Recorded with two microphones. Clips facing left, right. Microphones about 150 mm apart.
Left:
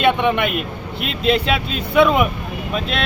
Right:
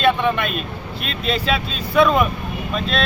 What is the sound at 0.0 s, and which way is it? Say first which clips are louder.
Speech: left 1 dB; 20° left (ahead or behind).